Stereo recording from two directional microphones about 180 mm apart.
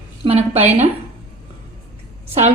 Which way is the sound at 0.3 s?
35° right (ahead or behind).